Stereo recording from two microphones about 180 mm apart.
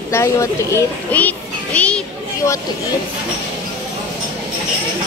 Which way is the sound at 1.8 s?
5° left (ahead or behind).